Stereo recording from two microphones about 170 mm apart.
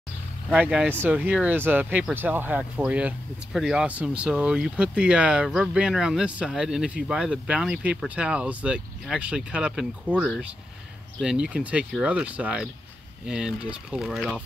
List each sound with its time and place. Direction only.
0.5 s speech: 5° right (ahead or behind)